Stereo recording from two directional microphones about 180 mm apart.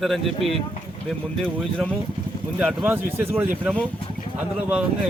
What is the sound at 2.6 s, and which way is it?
Speech, 5° right (ahead or behind).